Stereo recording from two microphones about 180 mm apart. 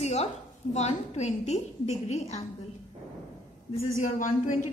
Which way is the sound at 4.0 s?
45° left (ahead or behind).